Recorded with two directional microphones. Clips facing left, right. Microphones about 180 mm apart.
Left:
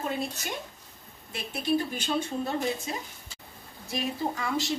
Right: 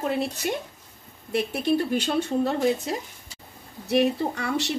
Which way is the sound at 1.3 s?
60° right (ahead or behind).